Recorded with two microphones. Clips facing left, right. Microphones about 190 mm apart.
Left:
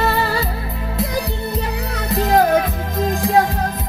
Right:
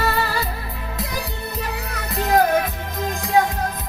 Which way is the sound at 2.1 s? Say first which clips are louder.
Left 3 dB; 30° left (ahead or behind).